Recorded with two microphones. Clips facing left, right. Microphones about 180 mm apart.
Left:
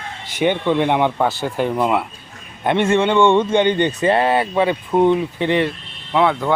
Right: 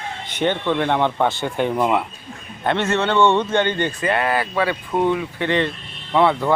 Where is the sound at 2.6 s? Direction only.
15° left (ahead or behind).